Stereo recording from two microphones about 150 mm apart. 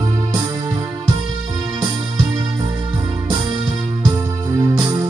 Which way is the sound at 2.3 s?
30° right (ahead or behind).